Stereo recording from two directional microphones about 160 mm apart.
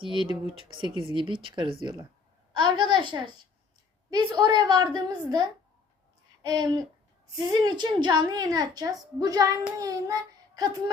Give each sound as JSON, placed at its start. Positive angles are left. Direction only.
{"t": 0.9, "sound": "a child's voice", "side_deg": -30}